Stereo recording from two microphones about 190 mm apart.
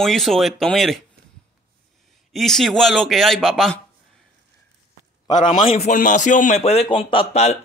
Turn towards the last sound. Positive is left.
turn(degrees=35)  # may be behind; listen again after turning